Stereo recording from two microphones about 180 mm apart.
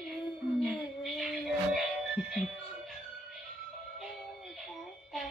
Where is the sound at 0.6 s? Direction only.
Centre (ahead or behind).